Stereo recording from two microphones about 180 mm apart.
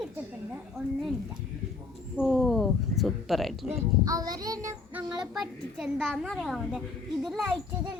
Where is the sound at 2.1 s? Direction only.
Centre (ahead or behind).